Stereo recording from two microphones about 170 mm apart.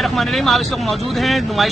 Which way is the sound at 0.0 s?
Centre (ahead or behind).